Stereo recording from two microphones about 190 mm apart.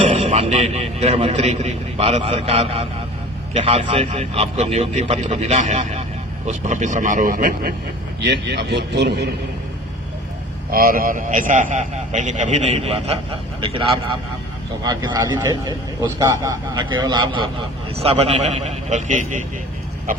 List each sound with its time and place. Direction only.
0.2 s a man's voice: 35° right (ahead or behind); by 7.7 s 50° right (ahead or behind)
8.2 s a man's voice: 65° right (ahead or behind)
10.7 s a man's voice: 50° right (ahead or behind); by 13.1 s 30° right (ahead or behind)
14.8 s a man's voice: 20° right (ahead or behind); by 19.4 s 40° right (ahead or behind)